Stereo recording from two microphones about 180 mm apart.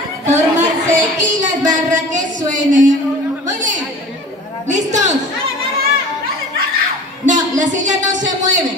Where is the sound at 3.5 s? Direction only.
45° right (ahead or behind).